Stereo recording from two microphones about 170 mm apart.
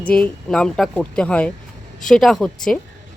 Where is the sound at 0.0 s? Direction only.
5° left (ahead or behind).